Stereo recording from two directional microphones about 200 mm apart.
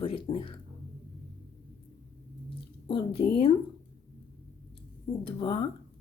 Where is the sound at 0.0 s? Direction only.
25° left (ahead or behind).